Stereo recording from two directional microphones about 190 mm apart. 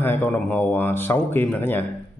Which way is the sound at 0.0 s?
10° left (ahead or behind).